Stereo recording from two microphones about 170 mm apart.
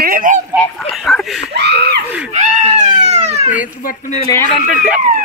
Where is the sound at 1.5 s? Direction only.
80° right.